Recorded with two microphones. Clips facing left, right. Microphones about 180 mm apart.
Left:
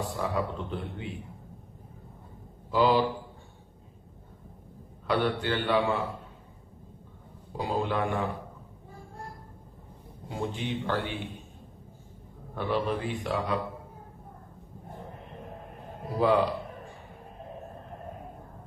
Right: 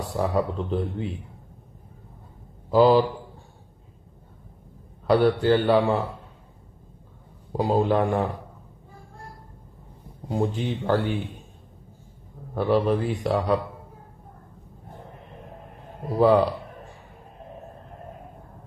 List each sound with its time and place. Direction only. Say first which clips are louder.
0.0 s speech: right 6 dB; 40° right (ahead or behind)
2.7 s speech: right 7 dB; 40° right (ahead or behind)
5.0 s speech: right 8 dB; 40° right (ahead or behind)
7.5 s speech: right 8 dB; 40° right (ahead or behind)
10.2 s speech: right 7 dB; 40° right (ahead or behind)
12.5 s speech: right 7 dB; 40° right (ahead or behind)
16.2 s speech: right 6 dB; 40° right (ahead or behind)